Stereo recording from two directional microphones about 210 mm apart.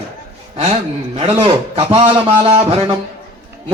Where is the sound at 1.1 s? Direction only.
30° right (ahead or behind).